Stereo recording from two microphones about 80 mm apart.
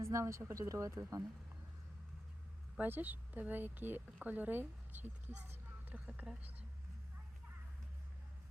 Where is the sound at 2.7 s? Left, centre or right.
Right.